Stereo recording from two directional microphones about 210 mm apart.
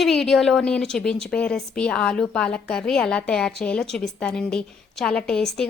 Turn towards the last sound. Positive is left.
turn(degrees=5)  # may be behind; listen again after turning